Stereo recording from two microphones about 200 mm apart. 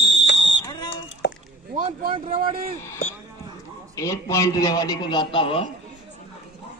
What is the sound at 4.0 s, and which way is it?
A man's voice, 15° left (ahead or behind).